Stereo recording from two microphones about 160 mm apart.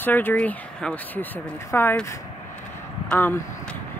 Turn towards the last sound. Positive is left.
turn(degrees=10)  # may be behind; listen again after turning